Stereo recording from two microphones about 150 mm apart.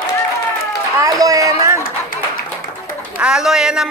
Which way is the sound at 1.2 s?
25° right (ahead or behind).